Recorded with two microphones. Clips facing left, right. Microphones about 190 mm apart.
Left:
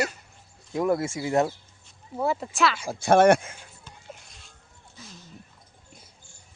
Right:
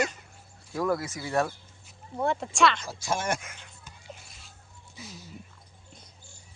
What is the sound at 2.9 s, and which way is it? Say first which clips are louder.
Speech: left 13 dB; 60° left (ahead or behind).